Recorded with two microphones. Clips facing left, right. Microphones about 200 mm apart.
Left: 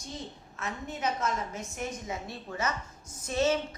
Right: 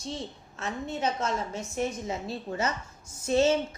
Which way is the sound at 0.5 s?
30° right (ahead or behind).